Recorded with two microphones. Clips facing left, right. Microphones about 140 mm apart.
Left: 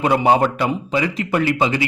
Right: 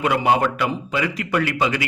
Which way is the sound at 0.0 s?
30° left (ahead or behind).